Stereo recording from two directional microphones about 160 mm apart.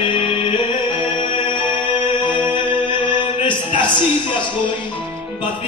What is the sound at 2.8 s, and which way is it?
Music, 30° left (ahead or behind).